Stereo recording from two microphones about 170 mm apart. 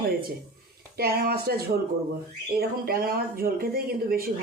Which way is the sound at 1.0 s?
65° right (ahead or behind).